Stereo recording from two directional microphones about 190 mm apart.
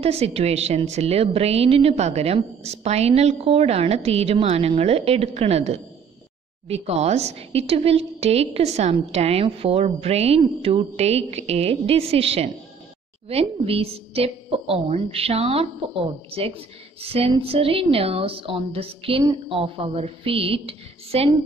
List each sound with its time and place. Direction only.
0.0 s a woman's voice: 35° right (ahead or behind)